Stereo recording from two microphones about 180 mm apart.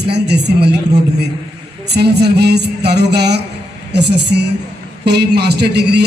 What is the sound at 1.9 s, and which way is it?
A man's voice, 65° right (ahead or behind).